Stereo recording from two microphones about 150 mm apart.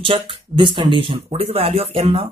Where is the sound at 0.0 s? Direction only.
35° right (ahead or behind).